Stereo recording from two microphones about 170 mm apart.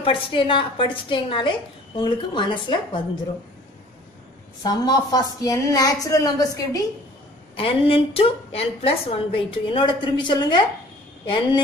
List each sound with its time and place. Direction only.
0.0 s a woman's voice: 30° left (ahead or behind)
4.6 s a woman's voice: 25° left (ahead or behind)
7.5 s a woman's voice: 30° left (ahead or behind)